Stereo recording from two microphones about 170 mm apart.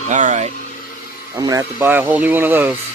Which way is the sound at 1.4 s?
20° right (ahead or behind).